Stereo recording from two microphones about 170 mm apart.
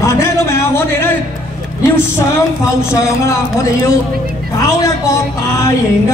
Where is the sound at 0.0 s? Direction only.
15° left (ahead or behind).